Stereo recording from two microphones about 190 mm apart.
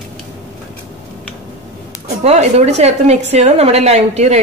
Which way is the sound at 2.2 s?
35° right (ahead or behind).